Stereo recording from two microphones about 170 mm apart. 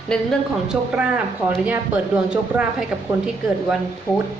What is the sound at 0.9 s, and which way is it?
Speech, 10° right (ahead or behind).